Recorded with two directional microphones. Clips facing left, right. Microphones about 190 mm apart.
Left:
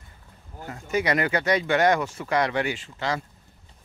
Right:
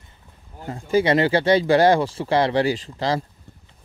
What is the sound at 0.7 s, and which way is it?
Speech, 30° right (ahead or behind).